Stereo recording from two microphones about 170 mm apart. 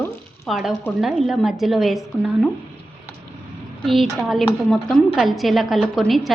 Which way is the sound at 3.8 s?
Centre (ahead or behind).